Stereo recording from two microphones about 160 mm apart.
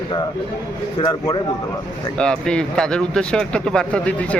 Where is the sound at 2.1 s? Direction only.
5° left (ahead or behind).